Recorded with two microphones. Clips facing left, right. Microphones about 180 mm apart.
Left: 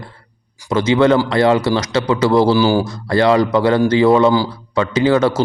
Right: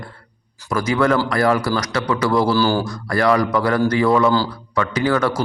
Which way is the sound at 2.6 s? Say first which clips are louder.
Left 4 dB; 15° left (ahead or behind).